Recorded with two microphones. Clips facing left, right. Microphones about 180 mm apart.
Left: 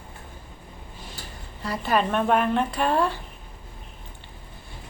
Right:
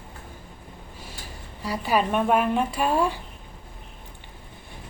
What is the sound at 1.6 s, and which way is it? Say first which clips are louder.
Speech: even; 10° right (ahead or behind).